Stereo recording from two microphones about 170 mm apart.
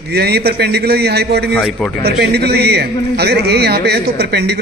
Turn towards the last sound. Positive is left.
turn(degrees=-75)  # may be behind; listen again after turning